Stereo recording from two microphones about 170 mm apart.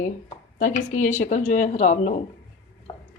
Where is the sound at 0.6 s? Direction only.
45° left (ahead or behind).